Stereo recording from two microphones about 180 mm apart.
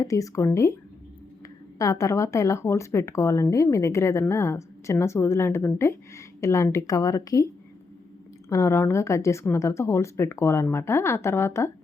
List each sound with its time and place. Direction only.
0.0 s speech: 20° left (ahead or behind)
1.8 s speech: 20° left (ahead or behind)